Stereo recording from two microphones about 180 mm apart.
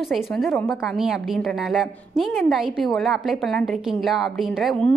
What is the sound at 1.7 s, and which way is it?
A woman's voice, centre (ahead or behind).